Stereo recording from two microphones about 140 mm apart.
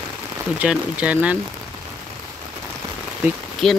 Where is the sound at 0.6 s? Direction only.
10° right (ahead or behind).